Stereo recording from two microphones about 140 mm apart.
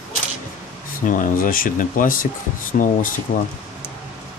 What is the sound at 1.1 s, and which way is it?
Speech, 75° left (ahead or behind).